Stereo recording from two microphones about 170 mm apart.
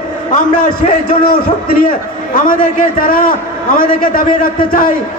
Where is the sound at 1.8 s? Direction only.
55° left (ahead or behind).